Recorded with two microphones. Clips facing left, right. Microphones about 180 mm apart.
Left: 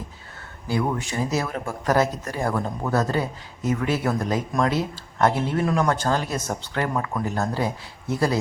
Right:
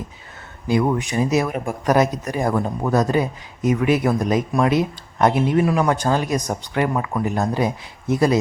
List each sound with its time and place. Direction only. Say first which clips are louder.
0.7 s speech: right 6 dB; 15° right (ahead or behind)